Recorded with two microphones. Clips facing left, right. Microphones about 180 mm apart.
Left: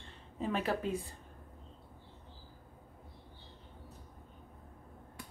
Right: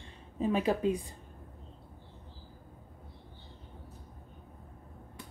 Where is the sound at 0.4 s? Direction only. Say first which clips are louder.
Right 5 dB; 15° right (ahead or behind).